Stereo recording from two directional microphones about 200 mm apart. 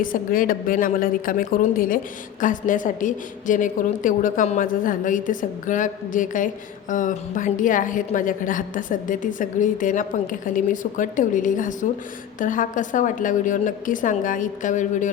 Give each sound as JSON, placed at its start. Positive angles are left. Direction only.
{"t": 0.0, "sound": "a woman's voice", "side_deg": 45}